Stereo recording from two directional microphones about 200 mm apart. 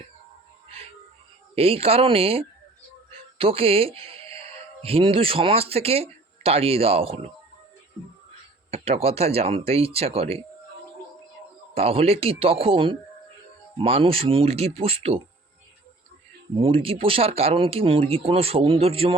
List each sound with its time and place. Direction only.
1.5 s speech: 30° right (ahead or behind)
8.7 s speech: 30° right (ahead or behind)
11.7 s speech: 30° right (ahead or behind)
16.6 s speech: 30° right (ahead or behind)